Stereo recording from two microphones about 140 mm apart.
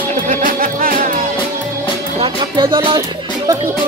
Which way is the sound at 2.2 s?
35° right (ahead or behind).